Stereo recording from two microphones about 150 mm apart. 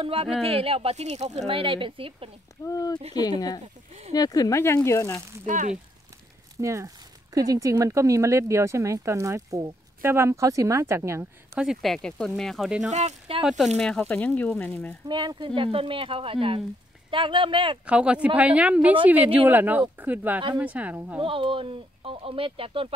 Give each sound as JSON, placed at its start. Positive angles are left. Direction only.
{"t": 0.0, "sound": "speech", "side_deg": -40}
{"t": 1.5, "sound": "speech", "side_deg": -35}
{"t": 2.6, "sound": "speech", "side_deg": 25}
{"t": 5.4, "sound": "speech", "side_deg": -55}
{"t": 6.5, "sound": "speech", "side_deg": -20}
{"t": 11.5, "sound": "speech", "side_deg": 0}
{"t": 15.0, "sound": "speech", "side_deg": -30}
{"t": 17.8, "sound": "speech", "side_deg": -10}
{"t": 21.2, "sound": "speech", "side_deg": -35}